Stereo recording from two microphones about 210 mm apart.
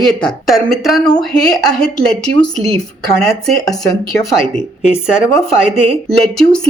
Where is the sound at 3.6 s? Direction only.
15° left (ahead or behind).